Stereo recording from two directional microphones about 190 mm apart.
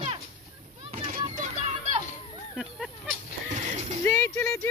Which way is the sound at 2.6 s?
Centre (ahead or behind).